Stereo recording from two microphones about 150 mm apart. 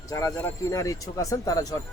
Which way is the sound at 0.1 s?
20° left (ahead or behind).